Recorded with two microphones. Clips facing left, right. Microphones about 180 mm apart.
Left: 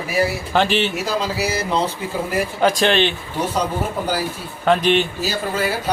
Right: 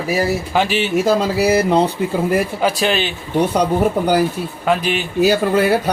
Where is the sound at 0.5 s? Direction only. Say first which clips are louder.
Left 1 dB; 10° right (ahead or behind).